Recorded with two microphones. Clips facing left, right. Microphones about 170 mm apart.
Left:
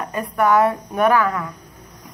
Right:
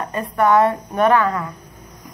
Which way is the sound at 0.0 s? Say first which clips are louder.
Right 1 dB; 10° left (ahead or behind).